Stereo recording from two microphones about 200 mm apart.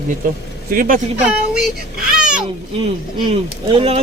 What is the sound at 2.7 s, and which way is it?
Speech, 25° right (ahead or behind).